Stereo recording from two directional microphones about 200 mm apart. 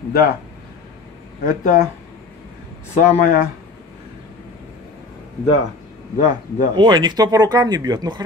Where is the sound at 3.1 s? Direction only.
40° left (ahead or behind).